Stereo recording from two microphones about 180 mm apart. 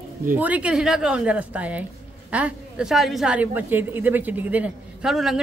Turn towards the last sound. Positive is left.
turn(degrees=0)  # may be behind; listen again after turning